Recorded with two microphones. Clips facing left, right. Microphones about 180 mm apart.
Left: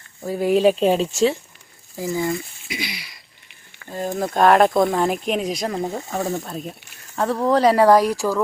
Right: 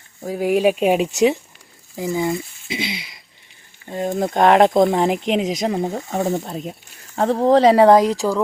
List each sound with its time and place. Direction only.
0.3 s speech: 10° right (ahead or behind)